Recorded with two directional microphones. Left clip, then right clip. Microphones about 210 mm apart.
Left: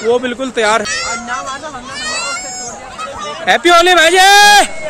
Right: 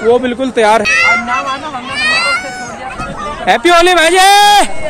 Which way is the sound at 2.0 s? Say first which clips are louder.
Right 9 dB; 30° left (ahead or behind).